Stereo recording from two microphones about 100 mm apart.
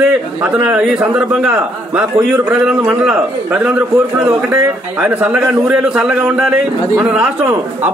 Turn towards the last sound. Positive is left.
turn(degrees=-10)  # may be behind; listen again after turning